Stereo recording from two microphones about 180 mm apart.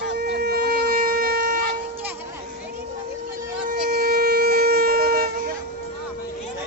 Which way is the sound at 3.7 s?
60° right (ahead or behind).